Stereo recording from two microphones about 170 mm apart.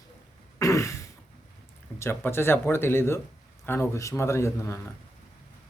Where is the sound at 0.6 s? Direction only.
15° left (ahead or behind).